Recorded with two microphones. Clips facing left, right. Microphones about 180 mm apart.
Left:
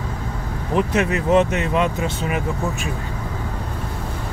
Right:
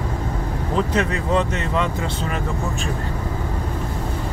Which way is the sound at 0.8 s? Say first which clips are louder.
Left 2 dB; 15° left (ahead or behind).